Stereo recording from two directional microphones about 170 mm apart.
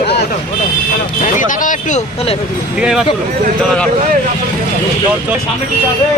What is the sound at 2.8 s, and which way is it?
Speech, 5° right (ahead or behind).